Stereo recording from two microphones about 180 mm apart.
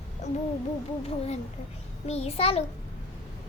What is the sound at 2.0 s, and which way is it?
Speech, 35° left (ahead or behind).